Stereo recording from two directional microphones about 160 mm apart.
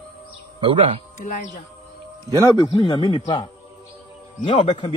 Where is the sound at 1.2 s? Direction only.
50° left (ahead or behind).